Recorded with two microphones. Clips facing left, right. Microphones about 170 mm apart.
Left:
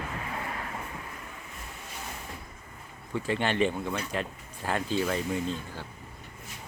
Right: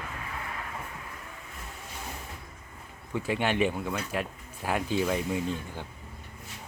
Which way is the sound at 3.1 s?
10° right (ahead or behind).